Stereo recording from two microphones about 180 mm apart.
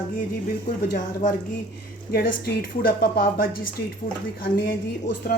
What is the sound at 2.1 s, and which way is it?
A woman's voice, 55° left (ahead or behind).